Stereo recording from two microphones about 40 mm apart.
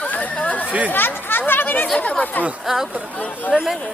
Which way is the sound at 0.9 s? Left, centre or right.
Left.